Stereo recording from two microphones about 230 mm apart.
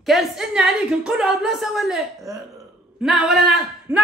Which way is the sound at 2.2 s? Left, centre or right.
Centre.